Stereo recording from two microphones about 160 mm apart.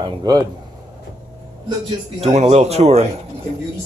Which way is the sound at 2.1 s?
45° right (ahead or behind).